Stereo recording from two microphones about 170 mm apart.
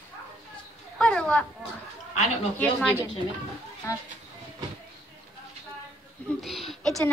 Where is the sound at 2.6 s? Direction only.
5° left (ahead or behind).